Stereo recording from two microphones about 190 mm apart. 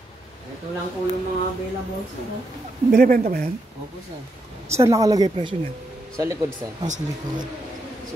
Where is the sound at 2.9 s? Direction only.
45° right (ahead or behind).